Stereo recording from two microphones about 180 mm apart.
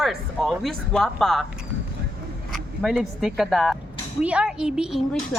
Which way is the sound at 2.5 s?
Centre (ahead or behind).